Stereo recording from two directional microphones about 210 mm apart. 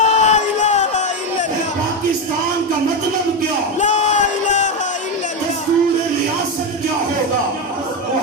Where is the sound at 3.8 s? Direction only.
35° left (ahead or behind).